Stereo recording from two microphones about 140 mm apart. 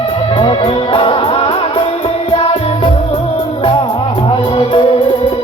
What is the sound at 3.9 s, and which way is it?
Music, 30° left (ahead or behind).